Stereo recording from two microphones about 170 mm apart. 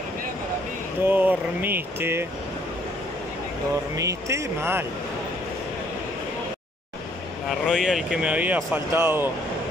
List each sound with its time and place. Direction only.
1.0 s speech: 10° right (ahead or behind)
3.9 s speech: 20° right (ahead or behind)
7.4 s speech: 5° right (ahead or behind)